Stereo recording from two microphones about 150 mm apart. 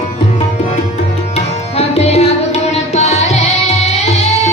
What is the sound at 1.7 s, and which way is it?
Music, 45° left (ahead or behind).